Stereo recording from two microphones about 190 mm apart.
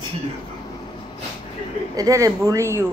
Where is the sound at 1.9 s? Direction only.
20° right (ahead or behind).